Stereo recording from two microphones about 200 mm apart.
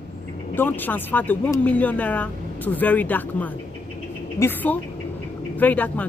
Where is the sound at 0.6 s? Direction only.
10° left (ahead or behind).